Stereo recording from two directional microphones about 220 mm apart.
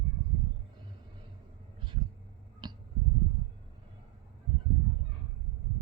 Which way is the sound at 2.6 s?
20° right (ahead or behind).